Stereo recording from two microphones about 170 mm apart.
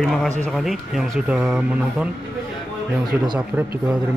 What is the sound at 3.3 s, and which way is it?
Speech, 10° right (ahead or behind).